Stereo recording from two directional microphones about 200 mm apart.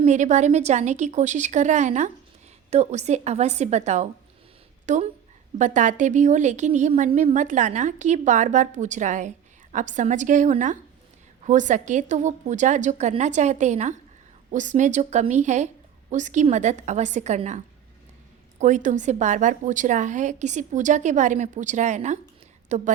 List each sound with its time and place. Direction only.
0.0 s a woman's voice: 35° right (ahead or behind)
18.6 s a woman's voice: 40° right (ahead or behind)